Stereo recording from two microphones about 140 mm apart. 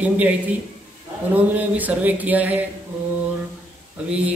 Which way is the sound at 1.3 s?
10° right (ahead or behind).